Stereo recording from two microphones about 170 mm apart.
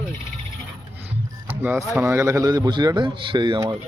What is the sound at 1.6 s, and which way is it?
A man's voice, 10° right (ahead or behind).